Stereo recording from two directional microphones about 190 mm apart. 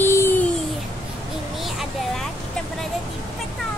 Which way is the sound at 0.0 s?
10° left (ahead or behind).